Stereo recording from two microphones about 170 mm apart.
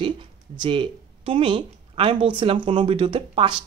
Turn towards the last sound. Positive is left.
turn(degrees=-30)  # may be behind; listen again after turning